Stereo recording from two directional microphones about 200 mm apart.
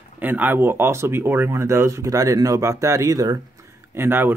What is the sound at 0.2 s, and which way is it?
Speech, 10° right (ahead or behind).